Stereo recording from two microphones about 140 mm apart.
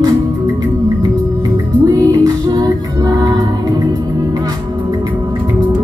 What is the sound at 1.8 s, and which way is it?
Music, 25° right (ahead or behind).